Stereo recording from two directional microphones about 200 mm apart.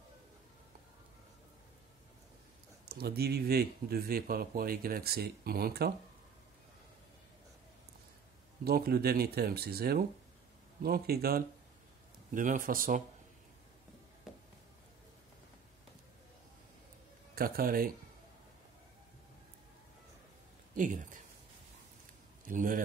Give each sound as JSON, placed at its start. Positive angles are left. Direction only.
{"t": 2.8, "sound": "speech", "side_deg": -50}
{"t": 8.6, "sound": "speech", "side_deg": -50}
{"t": 14.3, "sound": "a sound", "side_deg": 0}
{"t": 17.4, "sound": "speech", "side_deg": -45}
{"t": 20.7, "sound": "speech", "side_deg": -40}
{"t": 22.4, "sound": "a man's voice", "side_deg": -40}